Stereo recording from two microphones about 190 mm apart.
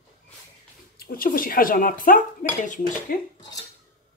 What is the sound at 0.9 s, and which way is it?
Speech, 50° left (ahead or behind).